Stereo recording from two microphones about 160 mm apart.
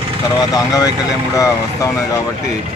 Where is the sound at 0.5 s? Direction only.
25° left (ahead or behind).